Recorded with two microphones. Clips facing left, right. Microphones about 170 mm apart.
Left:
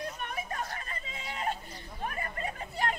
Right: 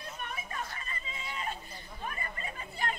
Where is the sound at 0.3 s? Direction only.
60° left (ahead or behind).